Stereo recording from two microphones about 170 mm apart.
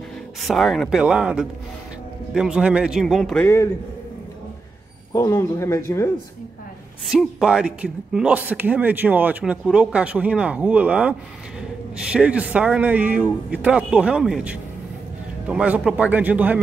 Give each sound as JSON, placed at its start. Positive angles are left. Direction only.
{"t": 0.5, "sound": "a man's voice", "side_deg": 0}
{"t": 5.1, "sound": "speech", "side_deg": 20}
{"t": 7.1, "sound": "speech", "side_deg": -5}